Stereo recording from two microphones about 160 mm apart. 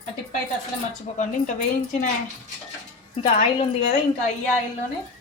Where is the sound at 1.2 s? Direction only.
50° left (ahead or behind).